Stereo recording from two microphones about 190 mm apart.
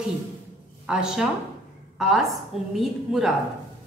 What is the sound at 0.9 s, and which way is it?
A woman's voice, 5° right (ahead or behind).